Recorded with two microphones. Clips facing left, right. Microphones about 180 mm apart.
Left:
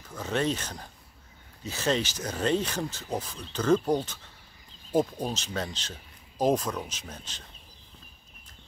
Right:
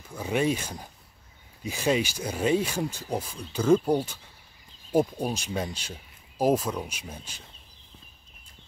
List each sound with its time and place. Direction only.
0.1 s speech: 10° right (ahead or behind)